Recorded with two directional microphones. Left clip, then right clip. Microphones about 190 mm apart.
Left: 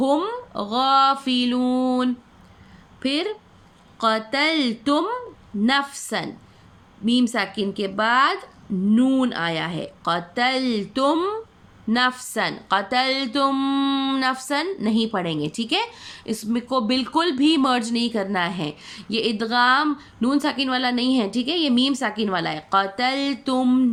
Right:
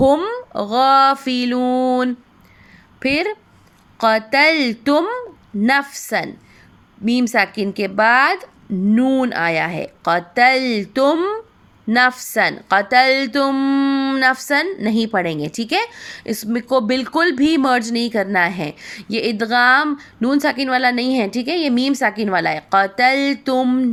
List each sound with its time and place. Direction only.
0.0 s a woman's voice: 30° right (ahead or behind)